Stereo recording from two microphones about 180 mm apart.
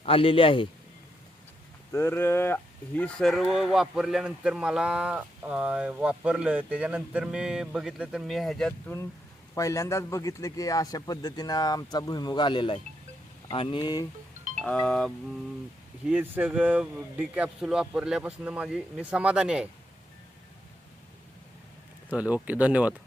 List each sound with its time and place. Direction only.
0.0 s a man's voice: 30° left (ahead or behind)
1.9 s speech: 15° left (ahead or behind)
9.6 s a man's voice: 15° left (ahead or behind)
14.6 s speech: 5° left (ahead or behind)
16.0 s speech: 10° right (ahead or behind)
22.1 s speech: 10° right (ahead or behind)